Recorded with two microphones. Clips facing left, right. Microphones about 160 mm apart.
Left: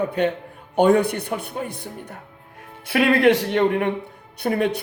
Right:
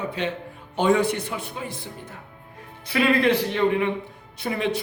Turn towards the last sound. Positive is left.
turn(degrees=55)  # may be behind; listen again after turning